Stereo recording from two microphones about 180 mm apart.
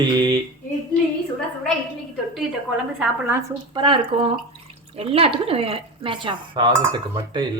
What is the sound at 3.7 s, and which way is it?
Speech, 30° right (ahead or behind).